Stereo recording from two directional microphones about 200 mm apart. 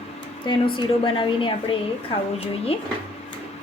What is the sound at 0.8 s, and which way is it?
Speech, 25° left (ahead or behind).